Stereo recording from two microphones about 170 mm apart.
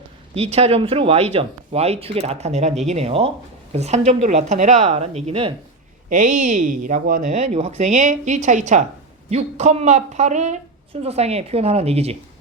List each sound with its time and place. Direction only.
0.3 s speech: 40° right (ahead or behind)
6.1 s speech: 50° right (ahead or behind)